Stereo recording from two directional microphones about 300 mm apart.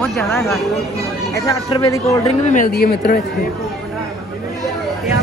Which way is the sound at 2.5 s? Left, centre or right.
Left.